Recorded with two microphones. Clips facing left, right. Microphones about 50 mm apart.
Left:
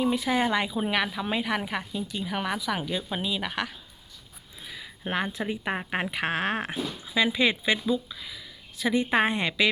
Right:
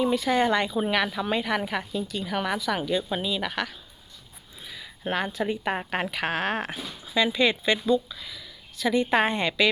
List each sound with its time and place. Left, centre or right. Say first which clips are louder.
0.0 s speech: right 2 dB; centre
5.0 s speech: right 2 dB; centre
6.1 s speech: left 1 dB; centre